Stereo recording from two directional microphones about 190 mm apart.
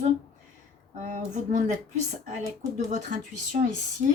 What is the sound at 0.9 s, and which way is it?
Speech, 40° right (ahead or behind).